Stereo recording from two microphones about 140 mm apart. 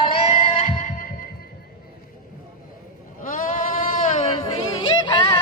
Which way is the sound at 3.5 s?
70° left (ahead or behind).